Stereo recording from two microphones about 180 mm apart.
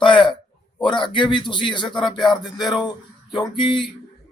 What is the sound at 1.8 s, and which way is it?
Music, centre (ahead or behind).